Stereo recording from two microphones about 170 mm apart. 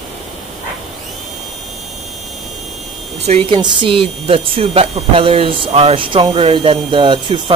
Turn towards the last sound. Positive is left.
turn(degrees=-30)  # may be behind; listen again after turning